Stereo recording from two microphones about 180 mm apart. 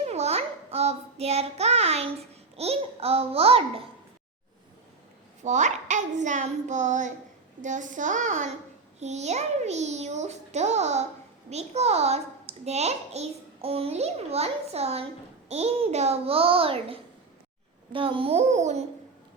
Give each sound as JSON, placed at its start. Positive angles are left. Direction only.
{"t": 0.0, "sound": "child singing", "side_deg": -35}
{"t": 2.6, "sound": "a child's voice", "side_deg": -35}
{"t": 5.4, "sound": "a child's voice", "side_deg": -40}